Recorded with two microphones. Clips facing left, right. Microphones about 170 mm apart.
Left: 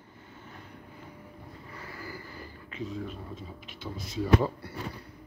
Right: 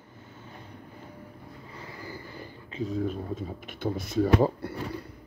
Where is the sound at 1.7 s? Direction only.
20° right (ahead or behind).